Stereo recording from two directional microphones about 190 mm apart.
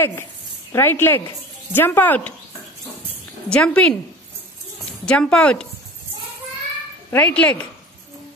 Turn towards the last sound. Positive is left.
turn(degrees=5)  # may be behind; listen again after turning